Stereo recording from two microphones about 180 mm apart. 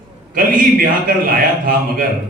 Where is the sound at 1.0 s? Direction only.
55° right (ahead or behind).